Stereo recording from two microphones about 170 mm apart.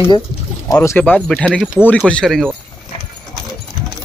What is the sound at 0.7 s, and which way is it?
Speech, 15° left (ahead or behind).